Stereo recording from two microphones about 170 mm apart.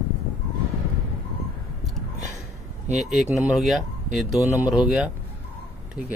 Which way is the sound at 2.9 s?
Centre (ahead or behind).